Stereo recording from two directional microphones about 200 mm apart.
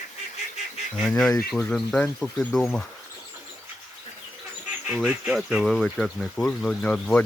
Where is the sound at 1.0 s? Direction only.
5° left (ahead or behind).